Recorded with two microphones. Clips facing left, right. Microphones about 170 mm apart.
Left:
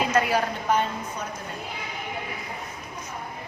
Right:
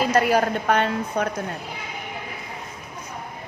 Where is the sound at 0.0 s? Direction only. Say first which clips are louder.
Right 4 dB; 40° right (ahead or behind).